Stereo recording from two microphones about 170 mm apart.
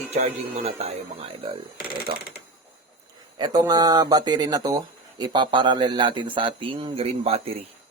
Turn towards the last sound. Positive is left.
turn(degrees=-35)  # may be behind; listen again after turning